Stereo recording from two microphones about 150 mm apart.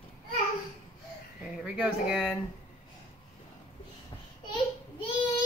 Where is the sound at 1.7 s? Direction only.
5° right (ahead or behind).